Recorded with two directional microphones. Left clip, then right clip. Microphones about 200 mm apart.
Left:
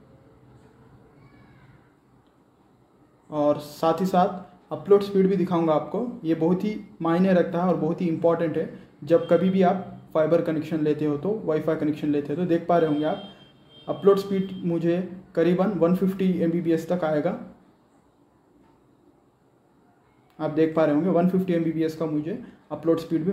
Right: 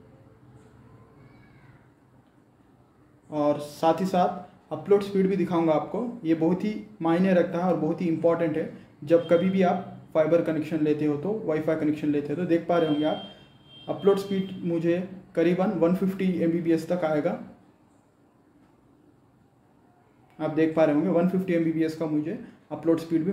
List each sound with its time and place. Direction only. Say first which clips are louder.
3.3 s speech: left 2 dB; 15° left (ahead or behind)
20.3 s a man's voice: left 1 dB; 20° left (ahead or behind)